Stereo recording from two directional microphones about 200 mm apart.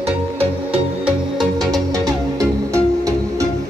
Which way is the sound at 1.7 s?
15° right (ahead or behind).